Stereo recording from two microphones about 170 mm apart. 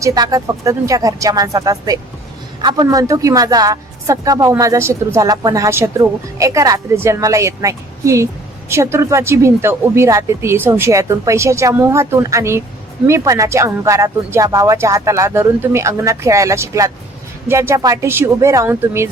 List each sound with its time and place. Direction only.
0.0 s a woman's voice: 20° right (ahead or behind)